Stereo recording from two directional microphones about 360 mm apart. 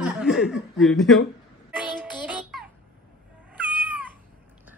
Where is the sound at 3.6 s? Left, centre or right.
Centre.